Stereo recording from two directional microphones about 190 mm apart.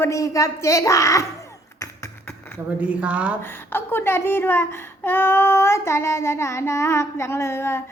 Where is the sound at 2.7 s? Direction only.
5° right (ahead or behind).